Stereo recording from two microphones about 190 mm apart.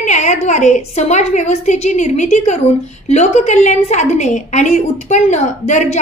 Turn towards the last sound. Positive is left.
turn(degrees=40)  # may be behind; listen again after turning